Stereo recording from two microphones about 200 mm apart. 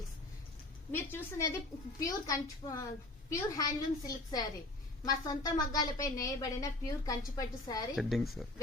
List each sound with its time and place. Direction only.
0.9 s a woman's voice: 10° left (ahead or behind)
7.9 s speech: centre (ahead or behind)